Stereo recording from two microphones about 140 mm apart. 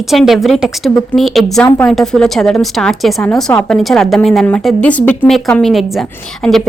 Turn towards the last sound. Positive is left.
turn(degrees=0)  # may be behind; listen again after turning